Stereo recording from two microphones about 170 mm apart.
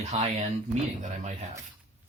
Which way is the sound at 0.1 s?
40° right (ahead or behind).